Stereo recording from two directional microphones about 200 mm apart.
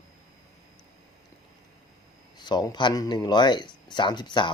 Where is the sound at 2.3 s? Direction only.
20° left (ahead or behind).